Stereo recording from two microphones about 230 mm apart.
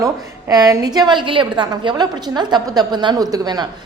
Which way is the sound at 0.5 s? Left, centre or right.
Centre.